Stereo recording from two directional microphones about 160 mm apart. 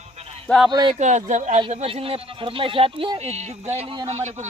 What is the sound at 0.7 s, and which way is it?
Speech, 25° right (ahead or behind).